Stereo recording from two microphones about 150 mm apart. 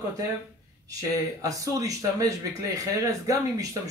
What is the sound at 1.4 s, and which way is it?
Speech, 20° right (ahead or behind).